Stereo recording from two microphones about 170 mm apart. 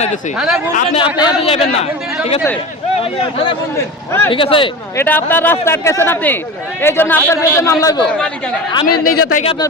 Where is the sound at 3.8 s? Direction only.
10° left (ahead or behind).